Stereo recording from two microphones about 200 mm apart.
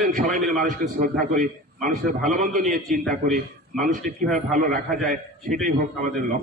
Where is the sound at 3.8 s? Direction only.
45° right (ahead or behind).